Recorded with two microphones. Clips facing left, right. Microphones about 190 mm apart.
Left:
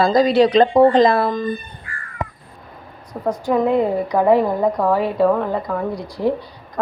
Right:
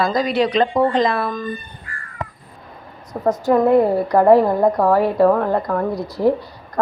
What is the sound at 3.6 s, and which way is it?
Speech, 5° right (ahead or behind).